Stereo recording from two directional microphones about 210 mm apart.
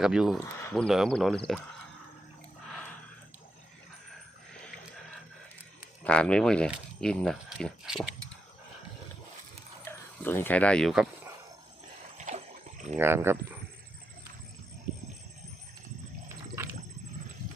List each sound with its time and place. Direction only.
0.0 s speech: 5° right (ahead or behind)
0.3 s speech: 10° left (ahead or behind)
6.1 s speech: 5° left (ahead or behind)
10.2 s speech: 10° left (ahead or behind)
12.1 s a sound: 35° right (ahead or behind)
13.0 s speech: 10° right (ahead or behind)
14.9 s a sound: 40° right (ahead or behind)
16.6 s wild animals: 10° right (ahead or behind)